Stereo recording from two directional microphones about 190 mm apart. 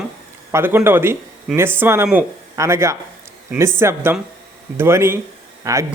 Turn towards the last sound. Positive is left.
turn(degrees=-15)  # may be behind; listen again after turning